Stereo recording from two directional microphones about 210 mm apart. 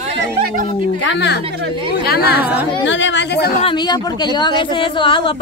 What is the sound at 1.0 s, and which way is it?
A woman's voice, 55° left (ahead or behind).